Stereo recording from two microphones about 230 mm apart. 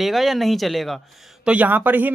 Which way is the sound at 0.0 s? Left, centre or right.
Centre.